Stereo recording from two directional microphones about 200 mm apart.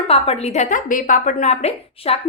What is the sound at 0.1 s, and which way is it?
A woman's voice, 30° left (ahead or behind).